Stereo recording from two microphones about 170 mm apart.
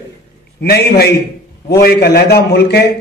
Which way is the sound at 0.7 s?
70° left (ahead or behind).